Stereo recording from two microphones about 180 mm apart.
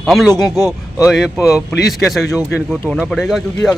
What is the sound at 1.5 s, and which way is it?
Speech, 5° right (ahead or behind).